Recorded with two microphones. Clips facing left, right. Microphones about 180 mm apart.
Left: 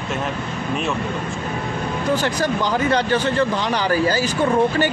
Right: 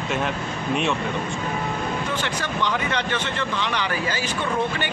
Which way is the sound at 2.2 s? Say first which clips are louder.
Left 5 dB; 40° left (ahead or behind).